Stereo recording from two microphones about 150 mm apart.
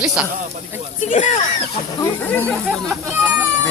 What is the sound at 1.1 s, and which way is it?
Speech, 50° left (ahead or behind).